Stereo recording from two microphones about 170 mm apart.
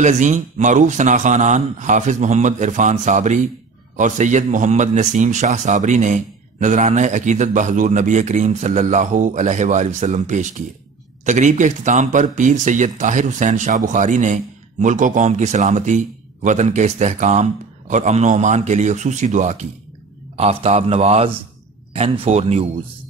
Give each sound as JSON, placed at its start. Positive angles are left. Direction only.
{"t": 0.0, "sound": "a man's voice", "side_deg": -45}